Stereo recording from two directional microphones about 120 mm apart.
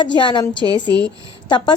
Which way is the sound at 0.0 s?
40° left (ahead or behind).